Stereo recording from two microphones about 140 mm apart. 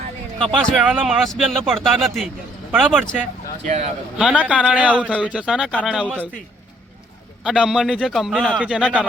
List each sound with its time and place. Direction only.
0.3 s speech: centre (ahead or behind)
3.6 s speech: 50° right (ahead or behind)
4.2 s a man's voice: 10° right (ahead or behind)
7.4 s speech: 5° right (ahead or behind)
8.5 s a man's voice: 5° right (ahead or behind)